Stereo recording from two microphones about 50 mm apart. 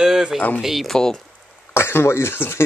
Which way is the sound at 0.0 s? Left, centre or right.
Centre.